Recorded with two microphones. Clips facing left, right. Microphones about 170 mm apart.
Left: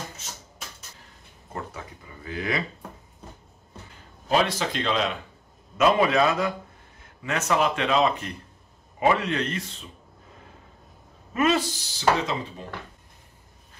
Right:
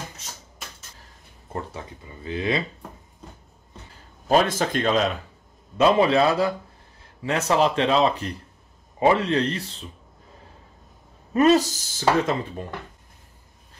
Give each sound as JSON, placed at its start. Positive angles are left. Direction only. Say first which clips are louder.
{"t": 1.5, "sound": "speech", "louder": "right 3 dB", "side_deg": -30}
{"t": 4.3, "sound": "speech", "louder": "right 4 dB", "side_deg": -45}
{"t": 5.8, "sound": "speech", "louder": "right 2 dB", "side_deg": -30}
{"t": 11.3, "sound": "speech", "louder": "right 6 dB", "side_deg": -40}